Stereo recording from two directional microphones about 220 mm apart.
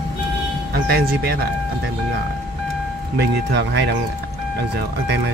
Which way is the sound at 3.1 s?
50° right (ahead or behind).